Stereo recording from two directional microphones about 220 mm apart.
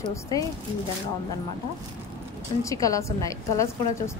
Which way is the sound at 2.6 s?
15° left (ahead or behind).